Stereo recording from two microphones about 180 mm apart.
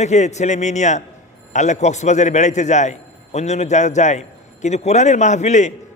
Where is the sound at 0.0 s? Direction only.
40° left (ahead or behind).